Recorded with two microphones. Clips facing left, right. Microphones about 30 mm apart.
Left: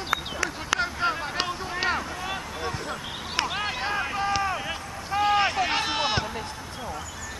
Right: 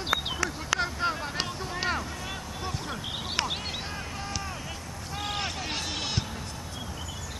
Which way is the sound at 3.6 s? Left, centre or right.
Left.